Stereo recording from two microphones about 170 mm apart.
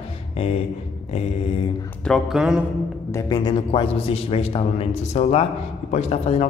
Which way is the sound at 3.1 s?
25° left (ahead or behind).